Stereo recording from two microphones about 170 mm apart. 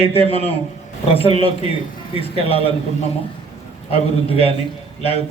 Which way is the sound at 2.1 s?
35° left (ahead or behind).